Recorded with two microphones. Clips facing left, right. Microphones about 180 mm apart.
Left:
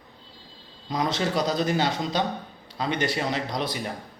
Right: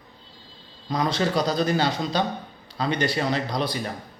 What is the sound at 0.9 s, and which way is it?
Speech, 20° left (ahead or behind).